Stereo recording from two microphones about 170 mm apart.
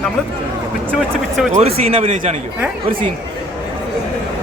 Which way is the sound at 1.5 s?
35° right (ahead or behind).